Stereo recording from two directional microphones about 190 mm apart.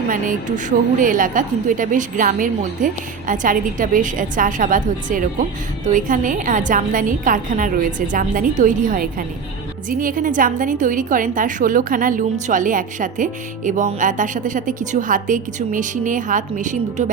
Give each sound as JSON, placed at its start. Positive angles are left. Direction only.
{"t": 0.1, "sound": "a woman's voice", "side_deg": -45}